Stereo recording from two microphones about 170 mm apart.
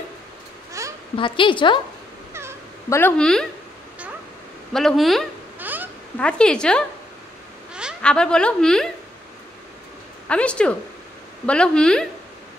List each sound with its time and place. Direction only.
0.8 s a sound: 20° right (ahead or behind)
1.1 s a woman's voice: 30° left (ahead or behind)
2.9 s a woman's voice: 10° left (ahead or behind)
4.7 s a woman's voice: centre (ahead or behind)
5.6 s a sound: 10° right (ahead or behind)
6.1 s a woman's voice: 5° left (ahead or behind)
8.0 s a woman's voice: 5° left (ahead or behind)
10.2 s a woman's voice: 5° left (ahead or behind)